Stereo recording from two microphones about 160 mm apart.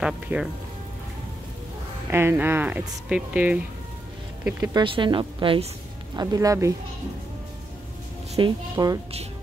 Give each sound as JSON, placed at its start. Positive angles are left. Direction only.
{"t": 0.0, "sound": "speech", "side_deg": -5}
{"t": 2.0, "sound": "speech", "side_deg": -15}
{"t": 4.7, "sound": "a woman's voice", "side_deg": -30}
{"t": 6.1, "sound": "a woman's voice", "side_deg": -25}
{"t": 8.4, "sound": "a woman's voice", "side_deg": -25}